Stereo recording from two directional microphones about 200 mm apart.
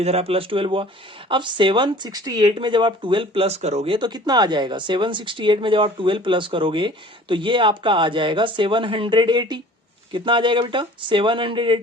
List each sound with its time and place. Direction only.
0.0 s speech: 30° right (ahead or behind)